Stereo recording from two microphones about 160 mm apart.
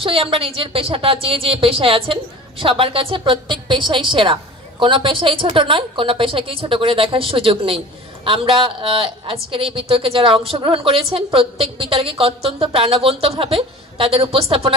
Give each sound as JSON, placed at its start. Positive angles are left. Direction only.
{"t": 0.0, "sound": "a woman's voice", "side_deg": -35}